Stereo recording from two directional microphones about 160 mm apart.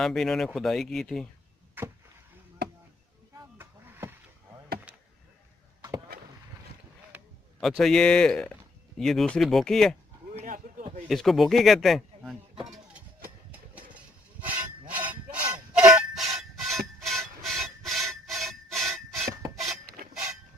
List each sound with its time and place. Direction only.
0.0 s speech: centre (ahead or behind)
1.8 s chop: 15° right (ahead or behind)
3.5 s vehicle: 15° right (ahead or behind)
7.6 s speech: centre (ahead or behind)
10.3 s a sound: 55° right (ahead or behind)
11.1 s speech: centre (ahead or behind)
13.9 s a sound: 10° right (ahead or behind)
15.7 s music: 5° right (ahead or behind)
19.5 s a sound: centre (ahead or behind)